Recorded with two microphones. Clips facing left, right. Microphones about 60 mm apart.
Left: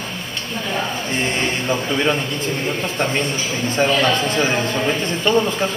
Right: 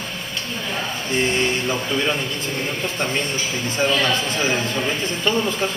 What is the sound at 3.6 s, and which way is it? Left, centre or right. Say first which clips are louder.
Speech: left 4 dB; left.